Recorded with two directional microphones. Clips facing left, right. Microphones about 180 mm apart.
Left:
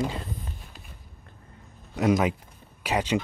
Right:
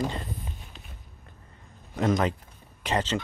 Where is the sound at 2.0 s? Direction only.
10° left (ahead or behind).